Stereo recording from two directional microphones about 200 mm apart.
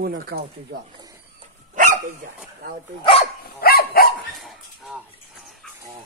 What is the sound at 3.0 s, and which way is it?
Speech, 25° left (ahead or behind).